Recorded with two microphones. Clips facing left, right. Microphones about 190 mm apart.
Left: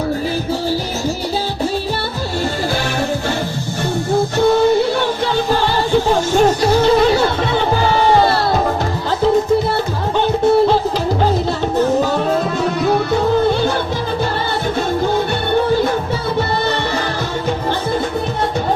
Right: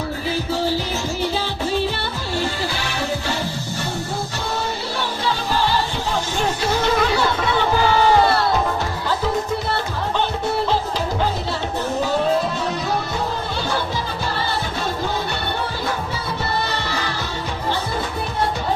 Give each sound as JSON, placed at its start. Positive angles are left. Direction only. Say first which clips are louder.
{"t": 6.3, "sound": "music", "louder": "left 10 dB", "side_deg": 40}
{"t": 12.6, "sound": "music", "louder": "left 8 dB", "side_deg": 60}